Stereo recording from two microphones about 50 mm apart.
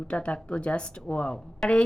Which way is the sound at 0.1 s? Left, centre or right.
Left.